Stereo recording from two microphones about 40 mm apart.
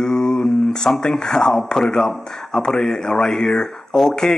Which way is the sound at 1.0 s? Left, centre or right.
Centre.